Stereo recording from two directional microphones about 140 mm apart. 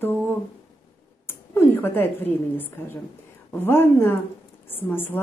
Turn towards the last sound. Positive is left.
turn(degrees=15)  # may be behind; listen again after turning